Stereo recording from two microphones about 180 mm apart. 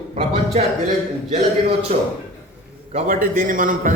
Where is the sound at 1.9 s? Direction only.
35° right (ahead or behind).